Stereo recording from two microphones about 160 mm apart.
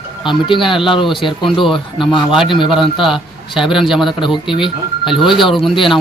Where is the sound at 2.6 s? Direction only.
Centre (ahead or behind).